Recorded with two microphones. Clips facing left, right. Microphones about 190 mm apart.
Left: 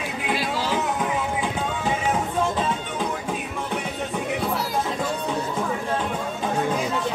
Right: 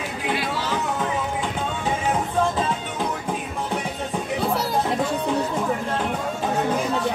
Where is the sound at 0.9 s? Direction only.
10° left (ahead or behind).